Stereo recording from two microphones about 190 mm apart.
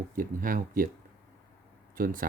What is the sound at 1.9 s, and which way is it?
Speech, 50° right (ahead or behind).